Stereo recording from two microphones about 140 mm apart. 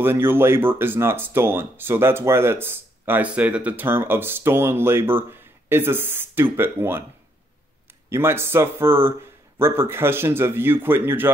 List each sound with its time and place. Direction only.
0.0 s speech: 15° right (ahead or behind)
8.1 s speech: 15° right (ahead or behind)